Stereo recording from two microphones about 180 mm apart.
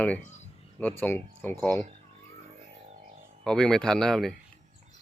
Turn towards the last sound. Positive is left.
turn(degrees=0)  # may be behind; listen again after turning